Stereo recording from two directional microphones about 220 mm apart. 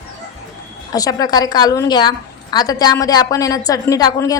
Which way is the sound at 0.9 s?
15° left (ahead or behind).